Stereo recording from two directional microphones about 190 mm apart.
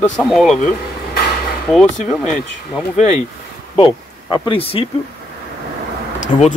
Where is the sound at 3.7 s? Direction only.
25° left (ahead or behind).